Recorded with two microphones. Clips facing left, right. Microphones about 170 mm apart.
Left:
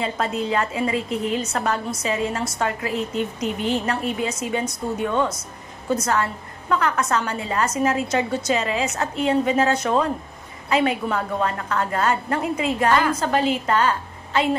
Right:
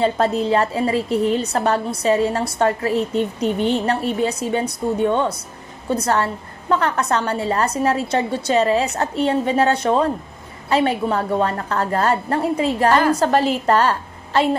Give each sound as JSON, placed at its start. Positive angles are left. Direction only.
{"t": 0.0, "sound": "a woman's voice", "side_deg": -35}
{"t": 6.7, "sound": "a woman's voice", "side_deg": -30}